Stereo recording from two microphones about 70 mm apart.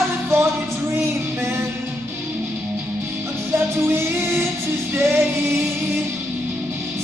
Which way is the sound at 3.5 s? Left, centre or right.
Right.